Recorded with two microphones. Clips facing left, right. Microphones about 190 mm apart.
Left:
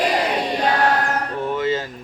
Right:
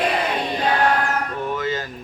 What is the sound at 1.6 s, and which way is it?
Music, 25° left (ahead or behind).